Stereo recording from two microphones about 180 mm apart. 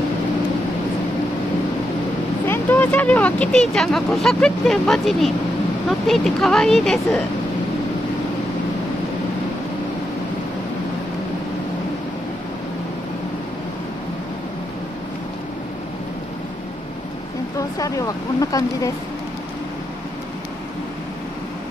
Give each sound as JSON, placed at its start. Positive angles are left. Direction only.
{"t": 2.4, "sound": "speech", "side_deg": 10}
{"t": 17.6, "sound": "speech", "side_deg": 20}